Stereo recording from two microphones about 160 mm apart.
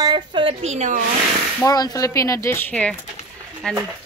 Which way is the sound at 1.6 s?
20° left (ahead or behind).